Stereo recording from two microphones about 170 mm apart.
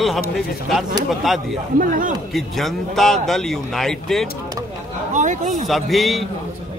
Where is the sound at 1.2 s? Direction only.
Centre (ahead or behind).